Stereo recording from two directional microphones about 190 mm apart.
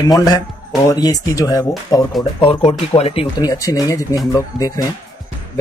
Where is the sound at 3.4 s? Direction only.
20° left (ahead or behind).